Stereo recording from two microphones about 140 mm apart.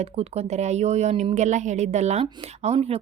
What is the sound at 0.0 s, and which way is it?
A woman's voice, 50° right (ahead or behind).